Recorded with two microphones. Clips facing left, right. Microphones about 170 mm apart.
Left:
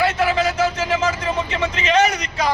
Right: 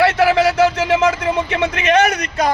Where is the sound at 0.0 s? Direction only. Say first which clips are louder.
Right 5 dB; 70° right (ahead or behind).